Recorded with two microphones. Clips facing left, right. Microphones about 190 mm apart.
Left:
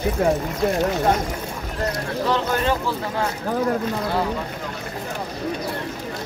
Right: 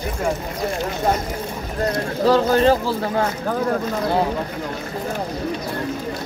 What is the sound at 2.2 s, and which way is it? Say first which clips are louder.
Speech: right 7 dB; 35° right (ahead or behind).